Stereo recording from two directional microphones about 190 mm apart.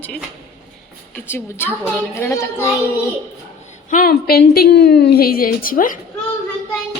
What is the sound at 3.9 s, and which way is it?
A woman's voice, 50° left (ahead or behind).